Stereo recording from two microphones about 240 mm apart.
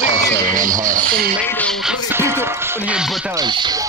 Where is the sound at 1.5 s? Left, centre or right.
Centre.